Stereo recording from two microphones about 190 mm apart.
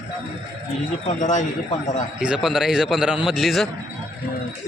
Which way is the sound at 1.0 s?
40° left (ahead or behind).